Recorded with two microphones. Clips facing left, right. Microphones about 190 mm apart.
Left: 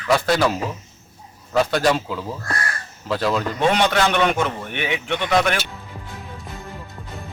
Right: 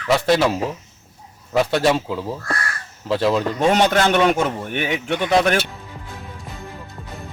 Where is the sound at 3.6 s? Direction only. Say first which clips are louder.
Right 1 dB; 45° right (ahead or behind).